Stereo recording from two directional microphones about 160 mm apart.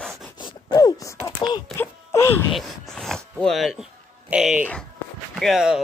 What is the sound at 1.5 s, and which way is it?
Speech, 15° left (ahead or behind).